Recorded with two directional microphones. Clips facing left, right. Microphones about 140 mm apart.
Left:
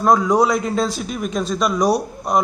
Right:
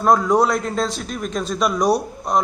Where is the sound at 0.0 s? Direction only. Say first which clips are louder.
Left 1 dB; centre (ahead or behind).